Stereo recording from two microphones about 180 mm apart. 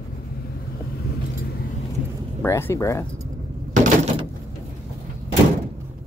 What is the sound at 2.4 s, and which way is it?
Speech, 15° left (ahead or behind).